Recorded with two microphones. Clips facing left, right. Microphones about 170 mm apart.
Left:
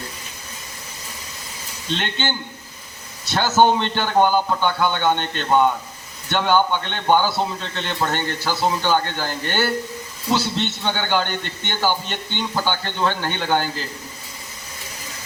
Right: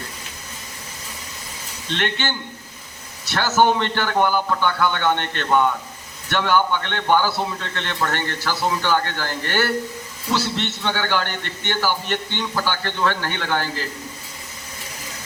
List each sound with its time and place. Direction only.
2.0 s a man's voice: 20° left (ahead or behind)
3.5 s a man's voice: 20° left (ahead or behind)